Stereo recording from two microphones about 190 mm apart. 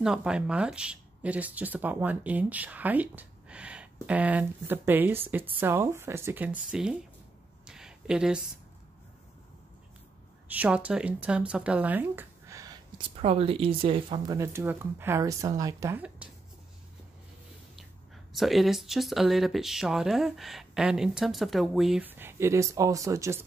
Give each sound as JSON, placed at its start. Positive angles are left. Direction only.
{"t": 0.0, "sound": "speech", "side_deg": -5}
{"t": 7.6, "sound": "a sound", "side_deg": -5}
{"t": 10.5, "sound": "speech", "side_deg": -10}
{"t": 13.1, "sound": "speech", "side_deg": -30}
{"t": 18.3, "sound": "speech", "side_deg": 0}